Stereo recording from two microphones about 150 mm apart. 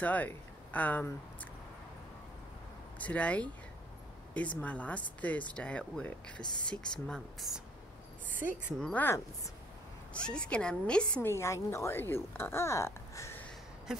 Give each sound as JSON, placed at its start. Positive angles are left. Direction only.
{"t": 0.0, "sound": "speech", "side_deg": 10}
{"t": 3.0, "sound": "speech", "side_deg": 10}
{"t": 8.4, "sound": "a woman's voice", "side_deg": -15}
{"t": 8.7, "sound": "speech", "side_deg": 5}
{"t": 10.1, "sound": "speech", "side_deg": 5}
{"t": 11.2, "sound": "speech", "side_deg": 20}
{"t": 13.9, "sound": "a sound", "side_deg": -5}